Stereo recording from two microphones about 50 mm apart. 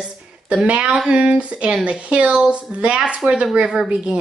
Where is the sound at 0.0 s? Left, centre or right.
Right.